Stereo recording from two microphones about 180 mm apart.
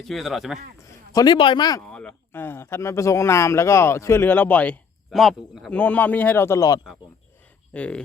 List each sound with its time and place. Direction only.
0.0 s speech: centre (ahead or behind)
1.1 s a man's voice: 25° left (ahead or behind)
1.9 s speech: 5° left (ahead or behind)
7.7 s speech: 5° left (ahead or behind)